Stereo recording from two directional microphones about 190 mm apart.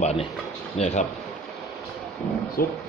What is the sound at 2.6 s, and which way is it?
Speech, 50° left (ahead or behind).